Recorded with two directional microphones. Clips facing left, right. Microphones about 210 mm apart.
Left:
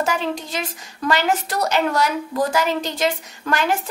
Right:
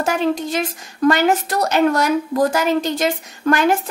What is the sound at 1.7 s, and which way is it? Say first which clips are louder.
A woman's voice: right 5 dB; 50° right (ahead or behind).